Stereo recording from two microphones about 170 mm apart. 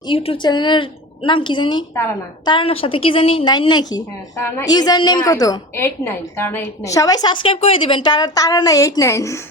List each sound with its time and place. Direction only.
0.1 s a woman's voice: 30° left (ahead or behind); by 9.4 s 15° left (ahead or behind)